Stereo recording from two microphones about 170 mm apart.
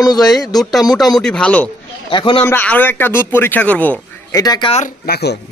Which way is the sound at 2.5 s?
10° left (ahead or behind).